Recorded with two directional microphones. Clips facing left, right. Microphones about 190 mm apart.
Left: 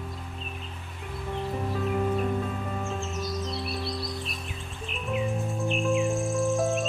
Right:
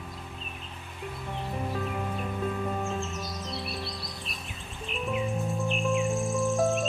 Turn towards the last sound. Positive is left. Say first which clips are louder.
# even
turn(degrees=0)  # may be behind; listen again after turning